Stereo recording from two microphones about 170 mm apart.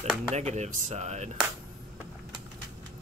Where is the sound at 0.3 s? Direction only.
40° right (ahead or behind).